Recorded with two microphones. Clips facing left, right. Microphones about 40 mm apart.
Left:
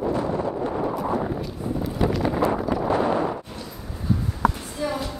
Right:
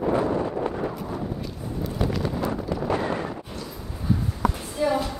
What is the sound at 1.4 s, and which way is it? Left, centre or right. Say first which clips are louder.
Wind noise: left 4 dB; centre.